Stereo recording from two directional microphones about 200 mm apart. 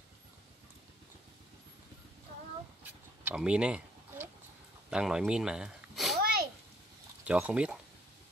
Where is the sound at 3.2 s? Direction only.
5° right (ahead or behind).